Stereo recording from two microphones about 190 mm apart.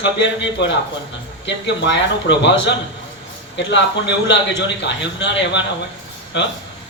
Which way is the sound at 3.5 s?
65° left (ahead or behind).